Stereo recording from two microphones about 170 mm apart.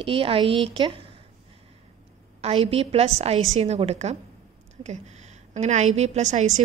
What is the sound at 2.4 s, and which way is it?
A woman's voice, 35° right (ahead or behind).